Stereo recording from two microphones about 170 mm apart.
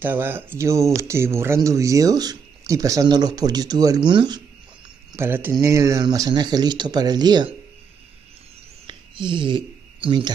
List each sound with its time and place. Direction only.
0.0 s speech: 10° right (ahead or behind)
5.1 s speech: 15° right (ahead or behind)
8.8 s a sound: 30° right (ahead or behind)